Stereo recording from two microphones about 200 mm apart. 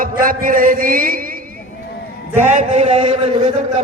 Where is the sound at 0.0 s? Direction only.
45° right (ahead or behind).